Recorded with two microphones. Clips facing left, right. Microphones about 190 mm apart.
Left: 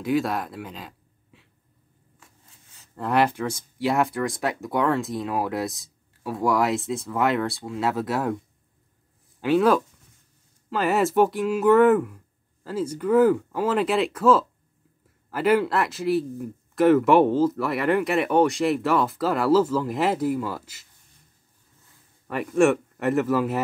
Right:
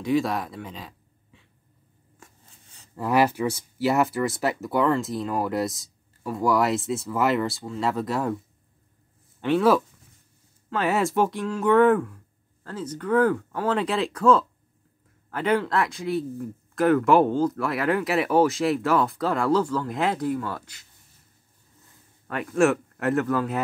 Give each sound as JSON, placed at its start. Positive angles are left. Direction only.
{"t": 0.0, "sound": "speech", "side_deg": 0}
{"t": 2.2, "sound": "a sound", "side_deg": -45}
{"t": 3.0, "sound": "speech", "side_deg": -10}
{"t": 9.4, "sound": "speech", "side_deg": 0}
{"t": 22.3, "sound": "speech", "side_deg": 5}